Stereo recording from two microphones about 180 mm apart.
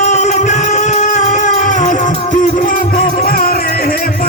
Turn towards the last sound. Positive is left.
turn(degrees=55)  # may be behind; listen again after turning